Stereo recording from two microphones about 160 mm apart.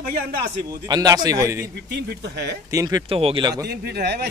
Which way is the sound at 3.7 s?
80° right.